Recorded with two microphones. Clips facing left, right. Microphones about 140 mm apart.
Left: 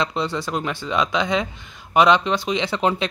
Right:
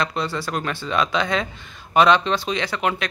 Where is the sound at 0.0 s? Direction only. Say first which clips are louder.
Left 1 dB; 20° left (ahead or behind).